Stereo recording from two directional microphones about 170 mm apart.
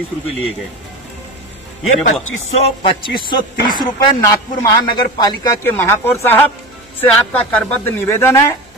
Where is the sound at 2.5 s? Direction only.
40° left (ahead or behind).